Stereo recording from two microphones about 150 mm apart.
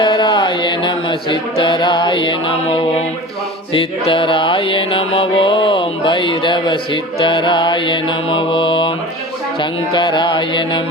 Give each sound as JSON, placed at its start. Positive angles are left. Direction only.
{"t": 0.0, "sound": "mantra", "side_deg": 30}
{"t": 3.7, "sound": "music", "side_deg": 35}
{"t": 9.9, "sound": "music", "side_deg": 30}